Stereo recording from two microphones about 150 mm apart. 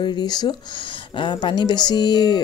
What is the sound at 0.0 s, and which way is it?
Speech, 30° left (ahead or behind).